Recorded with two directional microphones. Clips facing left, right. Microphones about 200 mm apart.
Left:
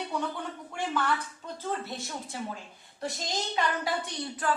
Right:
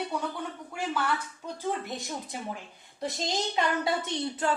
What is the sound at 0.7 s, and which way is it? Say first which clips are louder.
A woman's voice: left 1 dB; 5° right (ahead or behind).